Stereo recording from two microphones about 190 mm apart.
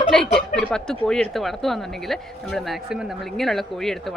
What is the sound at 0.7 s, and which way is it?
A woman's voice, 5° left (ahead or behind).